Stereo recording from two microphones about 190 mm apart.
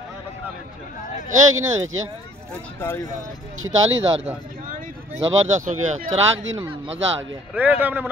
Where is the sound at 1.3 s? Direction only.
90° right.